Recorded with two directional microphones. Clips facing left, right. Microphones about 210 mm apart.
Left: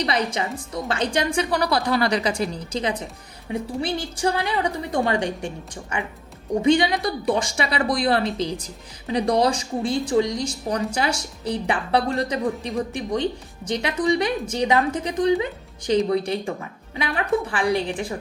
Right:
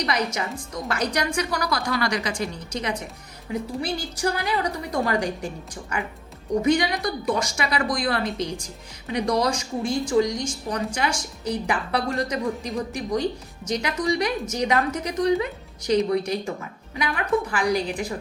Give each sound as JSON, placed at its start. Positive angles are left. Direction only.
{"t": 0.0, "sound": "speech", "side_deg": 30}